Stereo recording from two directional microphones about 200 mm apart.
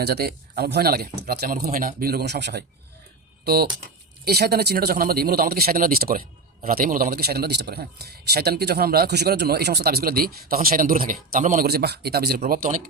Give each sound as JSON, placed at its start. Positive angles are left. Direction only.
{"t": 0.0, "sound": "a man's voice", "side_deg": -50}